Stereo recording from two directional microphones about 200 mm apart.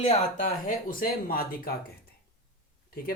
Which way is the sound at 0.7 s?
45° left (ahead or behind).